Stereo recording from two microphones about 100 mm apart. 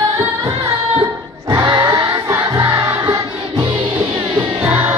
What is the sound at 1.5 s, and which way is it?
Music, 50° right (ahead or behind).